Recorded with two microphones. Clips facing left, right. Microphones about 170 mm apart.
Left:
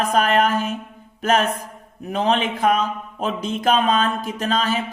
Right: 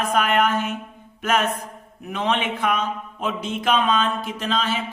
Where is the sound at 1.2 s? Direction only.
35° left (ahead or behind).